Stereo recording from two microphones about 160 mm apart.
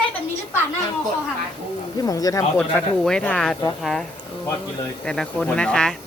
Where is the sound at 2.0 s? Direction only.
20° left (ahead or behind).